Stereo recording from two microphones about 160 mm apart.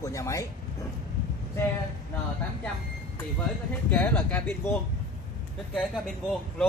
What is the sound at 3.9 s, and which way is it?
Speech, 10° left (ahead or behind).